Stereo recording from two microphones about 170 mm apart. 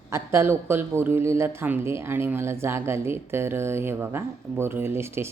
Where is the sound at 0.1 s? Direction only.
15° right (ahead or behind).